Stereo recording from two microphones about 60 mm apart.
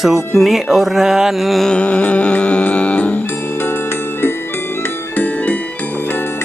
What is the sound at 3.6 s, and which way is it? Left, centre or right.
Music, left.